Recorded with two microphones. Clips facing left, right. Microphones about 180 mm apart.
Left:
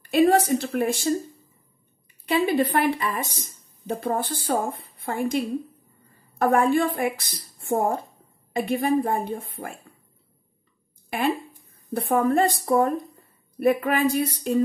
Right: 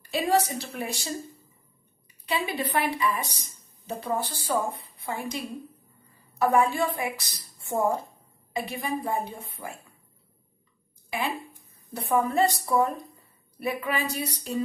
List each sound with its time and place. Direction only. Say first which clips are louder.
0.1 s speech: left 7 dB; 55° left (ahead or behind)
2.2 s a woman's voice: left 8 dB; 50° left (ahead or behind)
11.1 s speech: left 6 dB; 55° left (ahead or behind)